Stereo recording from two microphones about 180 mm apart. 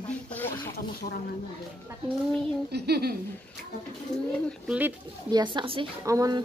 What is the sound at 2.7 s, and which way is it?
Speech, 60° right (ahead or behind).